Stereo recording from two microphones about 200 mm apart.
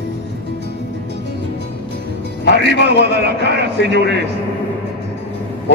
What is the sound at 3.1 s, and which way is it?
Speech, 55° right (ahead or behind).